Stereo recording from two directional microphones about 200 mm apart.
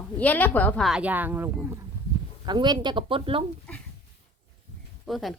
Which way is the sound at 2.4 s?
20° right (ahead or behind).